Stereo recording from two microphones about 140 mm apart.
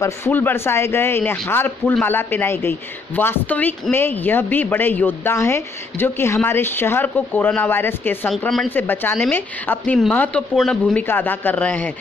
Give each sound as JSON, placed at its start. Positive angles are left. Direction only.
{"t": 0.0, "sound": "speech", "side_deg": 15}
{"t": 8.4, "sound": "speech", "side_deg": 5}
{"t": 8.7, "sound": "speech", "side_deg": 15}